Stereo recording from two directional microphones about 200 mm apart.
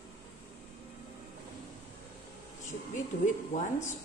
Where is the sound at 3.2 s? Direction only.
40° left (ahead or behind).